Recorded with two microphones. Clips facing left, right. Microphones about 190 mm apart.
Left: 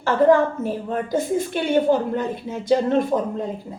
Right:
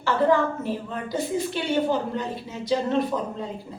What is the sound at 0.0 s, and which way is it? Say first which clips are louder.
A woman's voice: left 5 dB; 45° left (ahead or behind).